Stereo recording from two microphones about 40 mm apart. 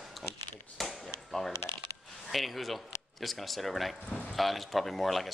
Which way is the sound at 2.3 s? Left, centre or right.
Centre.